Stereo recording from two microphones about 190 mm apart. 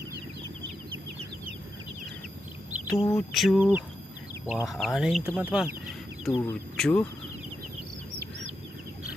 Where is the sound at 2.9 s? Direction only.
20° left (ahead or behind).